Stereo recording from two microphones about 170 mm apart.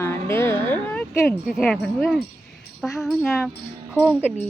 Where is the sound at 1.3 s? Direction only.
Centre (ahead or behind).